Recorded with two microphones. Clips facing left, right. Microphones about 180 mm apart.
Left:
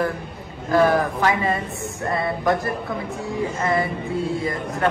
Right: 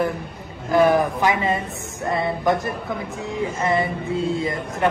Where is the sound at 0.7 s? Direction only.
15° right (ahead or behind).